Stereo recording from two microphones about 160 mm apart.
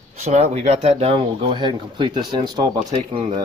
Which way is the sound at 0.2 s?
45° right (ahead or behind).